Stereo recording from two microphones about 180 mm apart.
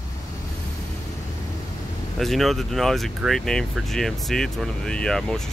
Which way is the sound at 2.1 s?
Centre (ahead or behind).